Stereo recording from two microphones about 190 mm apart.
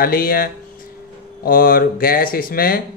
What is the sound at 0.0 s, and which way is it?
Speech, 50° left (ahead or behind).